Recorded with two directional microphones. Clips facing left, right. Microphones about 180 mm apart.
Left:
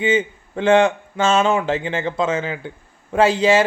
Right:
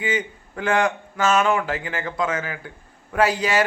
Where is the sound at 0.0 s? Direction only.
25° left (ahead or behind).